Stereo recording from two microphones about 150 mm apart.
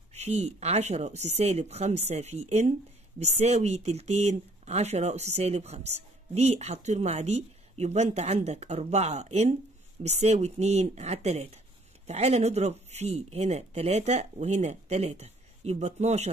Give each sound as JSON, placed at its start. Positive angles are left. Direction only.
{"t": 0.1, "sound": "speech", "side_deg": -45}